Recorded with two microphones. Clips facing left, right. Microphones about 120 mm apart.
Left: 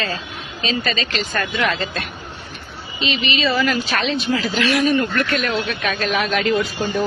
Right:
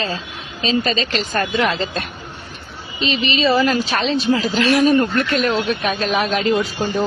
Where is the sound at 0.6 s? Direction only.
35° right (ahead or behind).